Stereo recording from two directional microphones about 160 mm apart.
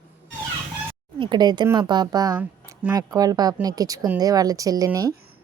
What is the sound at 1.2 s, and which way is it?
Speech, 25° right (ahead or behind).